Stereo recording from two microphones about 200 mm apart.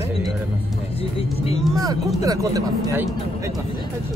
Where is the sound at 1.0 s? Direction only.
30° left (ahead or behind).